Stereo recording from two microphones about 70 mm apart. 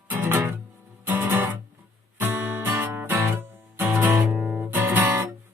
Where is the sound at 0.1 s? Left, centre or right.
Right.